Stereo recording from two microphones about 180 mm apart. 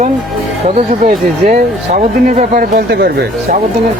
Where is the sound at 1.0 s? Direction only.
45° right (ahead or behind); by 3.2 s 65° right (ahead or behind).